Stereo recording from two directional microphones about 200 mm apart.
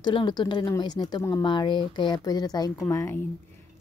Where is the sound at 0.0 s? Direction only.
20° left (ahead or behind).